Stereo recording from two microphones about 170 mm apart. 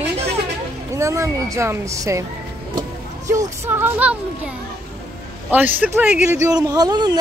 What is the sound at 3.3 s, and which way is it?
Speech, 15° right (ahead or behind).